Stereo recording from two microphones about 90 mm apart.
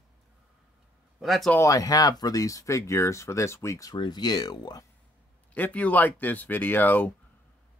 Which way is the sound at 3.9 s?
55° left (ahead or behind).